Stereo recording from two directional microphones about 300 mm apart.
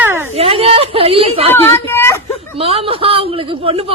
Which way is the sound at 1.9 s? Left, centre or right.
Centre.